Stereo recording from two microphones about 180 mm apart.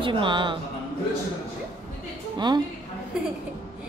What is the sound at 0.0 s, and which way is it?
Speech, 25° right (ahead or behind).